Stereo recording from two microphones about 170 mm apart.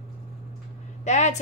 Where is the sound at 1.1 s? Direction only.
45° left (ahead or behind).